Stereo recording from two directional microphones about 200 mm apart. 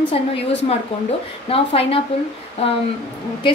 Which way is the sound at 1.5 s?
30° left (ahead or behind).